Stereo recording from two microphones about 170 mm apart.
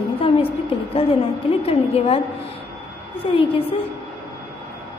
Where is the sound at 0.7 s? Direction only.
30° left (ahead or behind).